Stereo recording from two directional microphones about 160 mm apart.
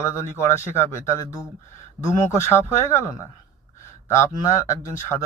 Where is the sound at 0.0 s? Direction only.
15° left (ahead or behind).